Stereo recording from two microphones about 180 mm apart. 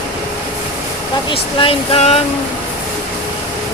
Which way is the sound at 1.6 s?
35° left (ahead or behind).